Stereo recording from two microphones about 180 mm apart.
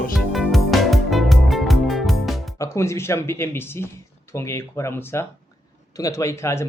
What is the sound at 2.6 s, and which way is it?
Speech, 15° left (ahead or behind).